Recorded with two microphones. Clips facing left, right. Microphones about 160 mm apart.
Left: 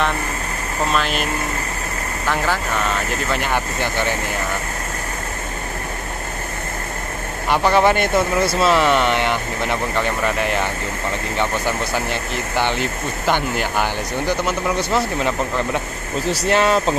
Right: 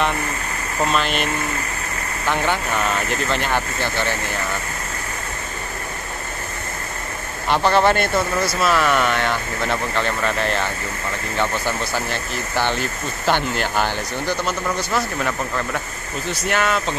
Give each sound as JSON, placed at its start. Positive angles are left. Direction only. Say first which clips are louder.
{"t": 0.9, "sound": "speech", "louder": "even", "side_deg": 0}
{"t": 7.4, "sound": "speech", "louder": "left 1 dB", "side_deg": 10}
{"t": 14.9, "sound": "speech", "louder": "left 3 dB", "side_deg": 20}
{"t": 16.3, "sound": "speech", "louder": "left 4 dB", "side_deg": 30}